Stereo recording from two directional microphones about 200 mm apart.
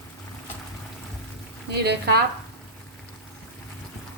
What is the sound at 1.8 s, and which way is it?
Speech, 55° right (ahead or behind).